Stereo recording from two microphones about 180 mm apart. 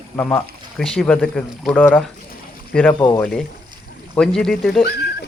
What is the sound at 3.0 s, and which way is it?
Speech, 25° left (ahead or behind).